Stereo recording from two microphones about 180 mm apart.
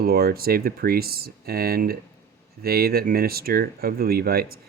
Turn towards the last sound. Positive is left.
turn(degrees=-55)  # may be behind; listen again after turning